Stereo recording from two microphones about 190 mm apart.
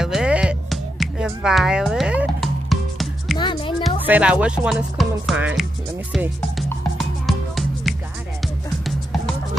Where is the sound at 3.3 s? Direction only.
25° left (ahead or behind).